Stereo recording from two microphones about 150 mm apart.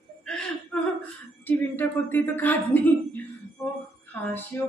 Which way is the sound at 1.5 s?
10° left (ahead or behind).